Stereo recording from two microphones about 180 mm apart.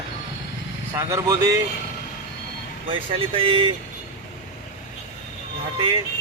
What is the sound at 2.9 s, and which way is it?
Speech, 30° right (ahead or behind).